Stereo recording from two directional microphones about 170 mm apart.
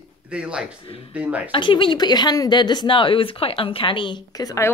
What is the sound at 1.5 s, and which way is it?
Speech, 30° left (ahead or behind).